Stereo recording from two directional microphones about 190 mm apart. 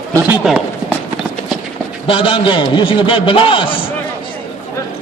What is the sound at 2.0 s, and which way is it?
A man's voice, 30° left (ahead or behind).